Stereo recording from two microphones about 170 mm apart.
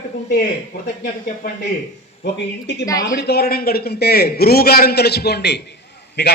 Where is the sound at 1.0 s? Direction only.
60° left (ahead or behind).